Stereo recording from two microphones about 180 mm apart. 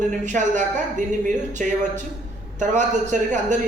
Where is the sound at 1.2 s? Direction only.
45° right (ahead or behind).